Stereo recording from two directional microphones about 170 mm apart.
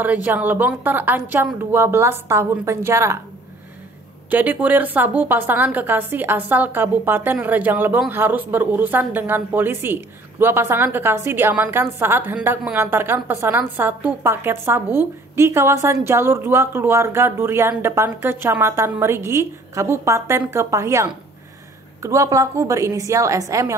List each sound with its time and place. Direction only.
0.0 s a woman's voice: 10° right (ahead or behind)
4.3 s a woman's voice: 10° right (ahead or behind)